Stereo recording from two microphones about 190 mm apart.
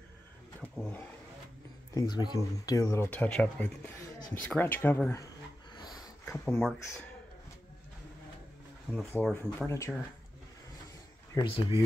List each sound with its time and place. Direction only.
0.6 s a sound: 5° left (ahead or behind)
2.0 s speech: 20° left (ahead or behind)
8.9 s speech: 5° left (ahead or behind)
11.3 s speech: 25° left (ahead or behind)